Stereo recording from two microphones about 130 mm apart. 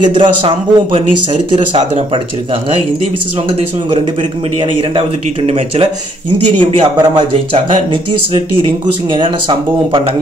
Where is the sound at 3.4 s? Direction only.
50° right (ahead or behind).